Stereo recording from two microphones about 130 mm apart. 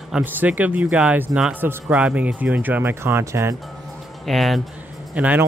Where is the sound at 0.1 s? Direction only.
10° right (ahead or behind).